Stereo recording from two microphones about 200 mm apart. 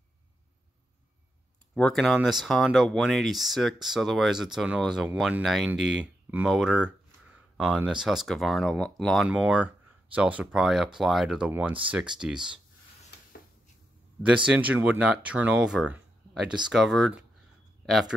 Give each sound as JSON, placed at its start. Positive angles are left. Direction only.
{"t": 1.8, "sound": "speech", "side_deg": 5}
{"t": 14.2, "sound": "speech", "side_deg": -5}